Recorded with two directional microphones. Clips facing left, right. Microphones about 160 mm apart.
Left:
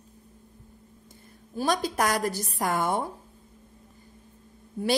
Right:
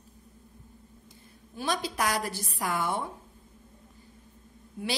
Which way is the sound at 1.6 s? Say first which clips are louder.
Left 5 dB; 45° left (ahead or behind).